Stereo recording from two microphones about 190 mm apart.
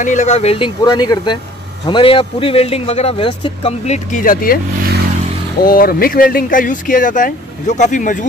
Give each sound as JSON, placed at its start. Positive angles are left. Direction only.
{"t": 0.0, "sound": "a man's voice", "side_deg": 40}
{"t": 5.6, "sound": "speech", "side_deg": 50}